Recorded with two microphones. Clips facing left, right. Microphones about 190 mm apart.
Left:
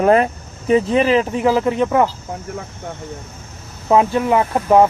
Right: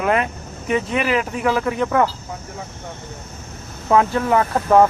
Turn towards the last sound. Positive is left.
turn(degrees=15)  # may be behind; listen again after turning